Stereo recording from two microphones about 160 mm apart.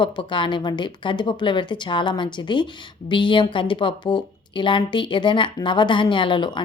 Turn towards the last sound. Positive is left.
turn(degrees=30)  # may be behind; listen again after turning